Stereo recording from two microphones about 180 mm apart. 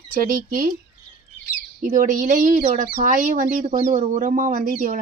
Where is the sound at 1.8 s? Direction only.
45° right (ahead or behind).